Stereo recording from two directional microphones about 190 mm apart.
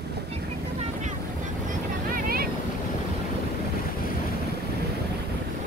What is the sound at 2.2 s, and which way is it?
Boat, 50° right (ahead or behind).